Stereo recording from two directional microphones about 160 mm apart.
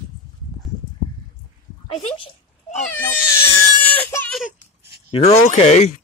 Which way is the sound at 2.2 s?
45° left (ahead or behind).